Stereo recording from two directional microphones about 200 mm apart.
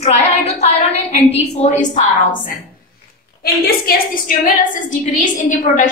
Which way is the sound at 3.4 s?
45° left (ahead or behind).